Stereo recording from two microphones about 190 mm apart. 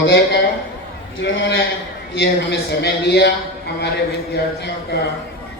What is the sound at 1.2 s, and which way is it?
A man's voice, 70° left (ahead or behind).